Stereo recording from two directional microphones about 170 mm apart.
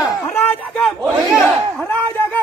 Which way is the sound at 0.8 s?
Centre (ahead or behind).